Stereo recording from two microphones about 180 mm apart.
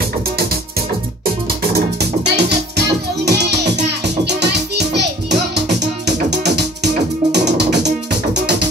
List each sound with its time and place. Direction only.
1.6 s music: 65° right (ahead or behind)